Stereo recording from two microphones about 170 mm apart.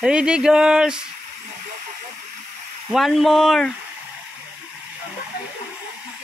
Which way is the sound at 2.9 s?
Centre (ahead or behind).